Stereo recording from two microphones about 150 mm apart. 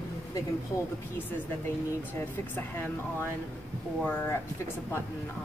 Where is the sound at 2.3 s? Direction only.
15° left (ahead or behind).